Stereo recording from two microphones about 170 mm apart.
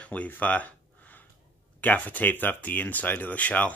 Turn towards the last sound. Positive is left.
turn(degrees=10)  # may be behind; listen again after turning